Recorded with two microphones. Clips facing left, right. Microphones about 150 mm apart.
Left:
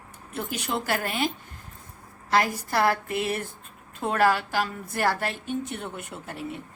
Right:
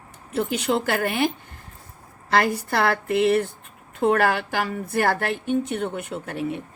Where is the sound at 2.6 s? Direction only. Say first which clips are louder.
Right 2 dB; 65° right (ahead or behind).